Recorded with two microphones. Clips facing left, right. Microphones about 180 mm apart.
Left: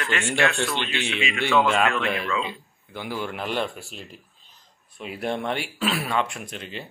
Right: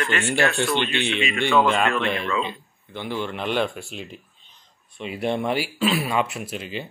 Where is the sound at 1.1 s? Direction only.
5° left (ahead or behind).